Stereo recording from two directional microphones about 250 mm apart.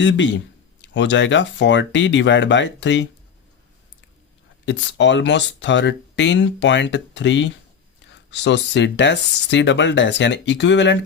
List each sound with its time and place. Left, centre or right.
0.0 s speech: left
4.6 s speech: left